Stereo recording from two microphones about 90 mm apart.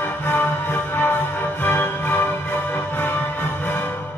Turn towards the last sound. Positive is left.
turn(degrees=20)  # may be behind; listen again after turning